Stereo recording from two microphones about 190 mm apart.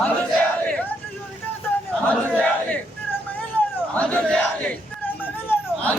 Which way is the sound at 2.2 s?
10° left (ahead or behind).